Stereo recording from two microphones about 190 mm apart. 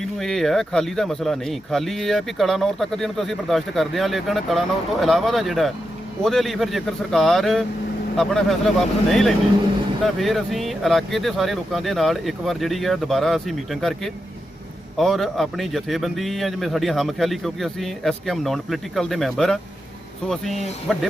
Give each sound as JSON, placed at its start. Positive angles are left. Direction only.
{"t": 0.2, "sound": "speech", "side_deg": 0}